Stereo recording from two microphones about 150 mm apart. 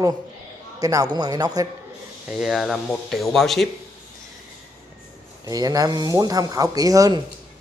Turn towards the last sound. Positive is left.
turn(degrees=-25)  # may be behind; listen again after turning